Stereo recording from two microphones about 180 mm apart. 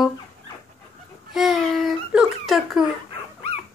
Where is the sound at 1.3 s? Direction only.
Centre (ahead or behind).